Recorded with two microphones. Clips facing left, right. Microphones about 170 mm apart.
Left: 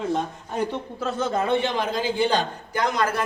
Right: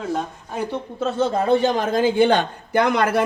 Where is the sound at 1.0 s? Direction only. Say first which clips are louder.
Right 4 dB; 30° right (ahead or behind); by 3.2 s 65° right (ahead or behind).